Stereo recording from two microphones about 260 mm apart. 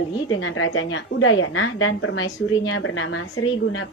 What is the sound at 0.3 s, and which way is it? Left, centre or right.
A woman's voice, left.